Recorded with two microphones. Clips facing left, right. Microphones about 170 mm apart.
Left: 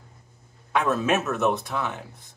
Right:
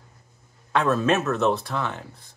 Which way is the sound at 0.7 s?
10° left (ahead or behind).